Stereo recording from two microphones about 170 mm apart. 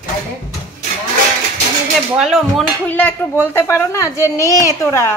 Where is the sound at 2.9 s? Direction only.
10° left (ahead or behind).